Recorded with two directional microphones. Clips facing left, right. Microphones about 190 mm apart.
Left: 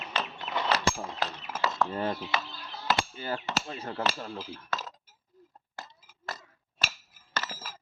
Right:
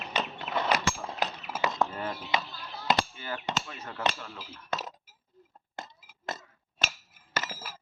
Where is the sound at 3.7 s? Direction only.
30° left (ahead or behind).